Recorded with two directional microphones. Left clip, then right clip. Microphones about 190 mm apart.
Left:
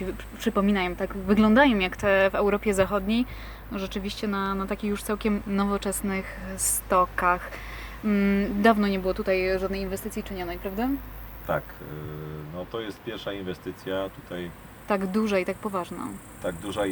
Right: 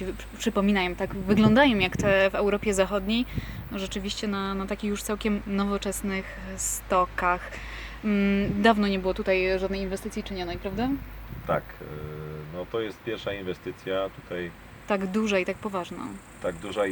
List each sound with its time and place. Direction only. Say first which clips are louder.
0.0 s speech: left 1 dB; 10° right (ahead or behind)
12.5 s speech: right 3 dB; 40° right (ahead or behind)
14.8 s speech: left 1 dB; 5° right (ahead or behind)
16.8 s speech: right 1 dB; 40° right (ahead or behind)